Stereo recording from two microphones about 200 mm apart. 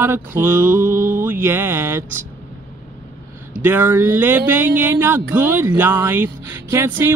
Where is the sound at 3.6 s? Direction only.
10° right (ahead or behind).